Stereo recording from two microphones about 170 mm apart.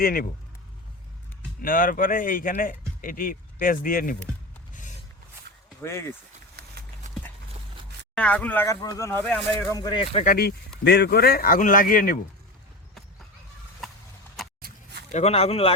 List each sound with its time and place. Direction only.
0.0 s speech: 60° left (ahead or behind)
1.6 s speech: 55° left (ahead or behind)
4.7 s a sound: 50° left (ahead or behind)
5.8 s speech: 15° left (ahead or behind)
8.1 s speech: 10° left (ahead or behind)
9.7 s speech: 25° left (ahead or behind)
10.2 s speech: 65° left (ahead or behind)
10.8 s speech: 80° left; by 12.2 s 55° left (ahead or behind)
15.1 s speech: 40° left (ahead or behind)